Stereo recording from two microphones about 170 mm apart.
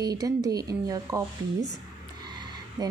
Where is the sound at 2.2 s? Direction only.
25° right (ahead or behind).